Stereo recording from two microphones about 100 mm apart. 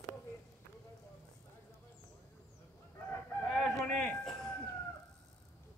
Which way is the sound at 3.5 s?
10° left (ahead or behind).